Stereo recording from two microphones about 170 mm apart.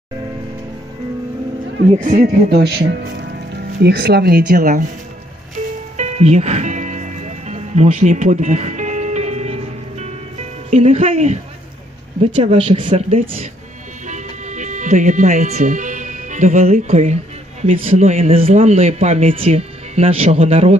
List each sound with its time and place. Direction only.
1.9 s a man's voice: 45° right (ahead or behind)
5.9 s music: 40° right (ahead or behind)
10.7 s speech: 40° right (ahead or behind)
14.0 s speech: 45° right (ahead or behind)